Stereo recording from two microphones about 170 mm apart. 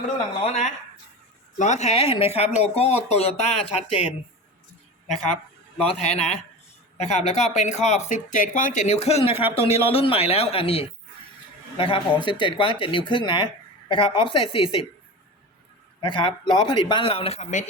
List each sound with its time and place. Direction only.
0.4 s speech: 45° left (ahead or behind)
5.8 s speech: 40° left (ahead or behind)
16.0 s a man's voice: 30° left (ahead or behind); by 17.7 s 45° left (ahead or behind)